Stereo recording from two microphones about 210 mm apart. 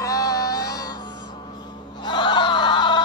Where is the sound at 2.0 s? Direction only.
20° left (ahead or behind).